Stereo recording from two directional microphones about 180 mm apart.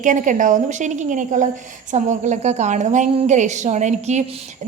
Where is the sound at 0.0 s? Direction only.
45° right (ahead or behind).